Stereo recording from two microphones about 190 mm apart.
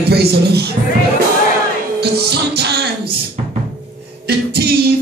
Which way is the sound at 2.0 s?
60° right (ahead or behind).